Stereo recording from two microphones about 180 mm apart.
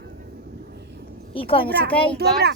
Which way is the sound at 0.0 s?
60° right (ahead or behind).